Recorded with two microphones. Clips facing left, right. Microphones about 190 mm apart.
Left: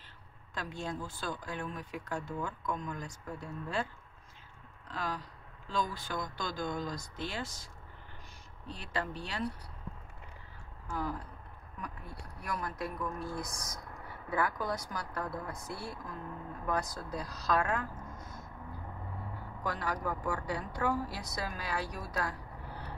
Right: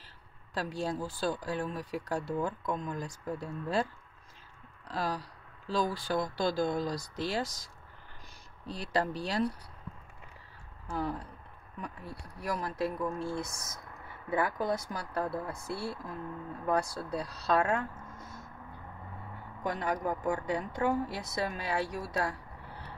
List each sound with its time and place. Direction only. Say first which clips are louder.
0.6 s speech: right 5 dB; 35° right (ahead or behind)
4.8 s speech: right 4 dB; 35° right (ahead or behind)
10.9 s speech: right 3 dB; 30° right (ahead or behind)
19.6 s speech: right 3 dB; 20° right (ahead or behind)